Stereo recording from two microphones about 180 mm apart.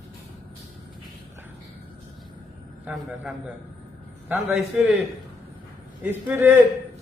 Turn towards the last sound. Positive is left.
turn(degrees=-10)  # may be behind; listen again after turning